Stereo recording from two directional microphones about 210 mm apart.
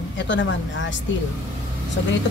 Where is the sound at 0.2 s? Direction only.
60° left (ahead or behind).